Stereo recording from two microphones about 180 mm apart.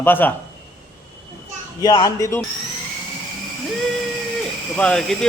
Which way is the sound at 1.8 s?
20° left (ahead or behind).